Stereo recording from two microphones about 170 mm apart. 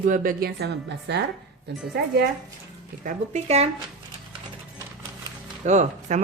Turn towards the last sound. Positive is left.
turn(degrees=-45)  # may be behind; listen again after turning